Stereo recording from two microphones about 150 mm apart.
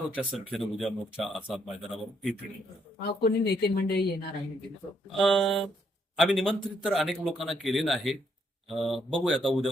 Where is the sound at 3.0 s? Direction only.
90° left.